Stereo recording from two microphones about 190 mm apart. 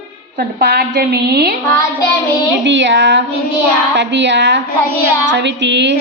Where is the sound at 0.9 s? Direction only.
60° right (ahead or behind).